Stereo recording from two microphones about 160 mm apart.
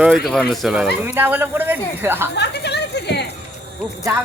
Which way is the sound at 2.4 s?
90° left.